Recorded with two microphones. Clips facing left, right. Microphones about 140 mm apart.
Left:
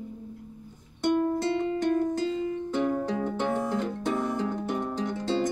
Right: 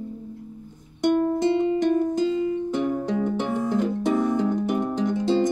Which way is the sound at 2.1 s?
15° right (ahead or behind).